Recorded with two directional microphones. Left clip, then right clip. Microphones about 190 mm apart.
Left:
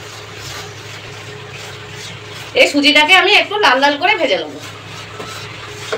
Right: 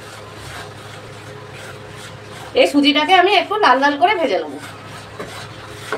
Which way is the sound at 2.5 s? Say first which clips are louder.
Left 3 dB; 65° right (ahead or behind).